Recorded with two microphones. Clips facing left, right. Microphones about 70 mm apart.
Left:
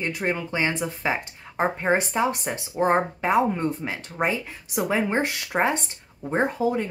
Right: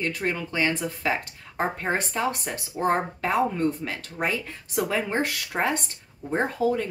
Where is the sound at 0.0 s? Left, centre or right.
Centre.